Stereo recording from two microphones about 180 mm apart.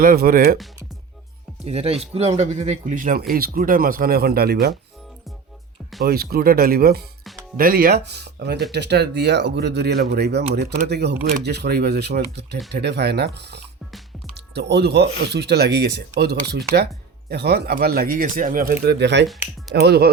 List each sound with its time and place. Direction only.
0.0 s speech: 55° right (ahead or behind)
1.6 s speech: 35° right (ahead or behind); by 4.7 s 60° right (ahead or behind)
6.1 s speech: 60° right (ahead or behind)